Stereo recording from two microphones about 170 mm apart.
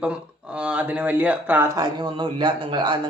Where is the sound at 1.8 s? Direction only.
25° right (ahead or behind).